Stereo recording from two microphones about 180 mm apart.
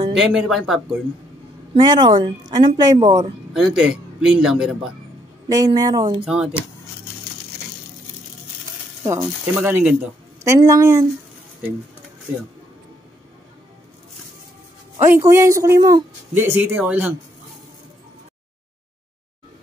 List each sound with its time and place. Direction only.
0.1 s a man's voice: 5° right (ahead or behind)
1.8 s speech: 25° right (ahead or behind)
3.5 s a man's voice: 5° right (ahead or behind)
5.5 s speech: 20° right (ahead or behind)
6.2 s a man's voice: 5° right (ahead or behind)
9.0 s speech: 15° right (ahead or behind)
15.0 s speech: 15° right (ahead or behind)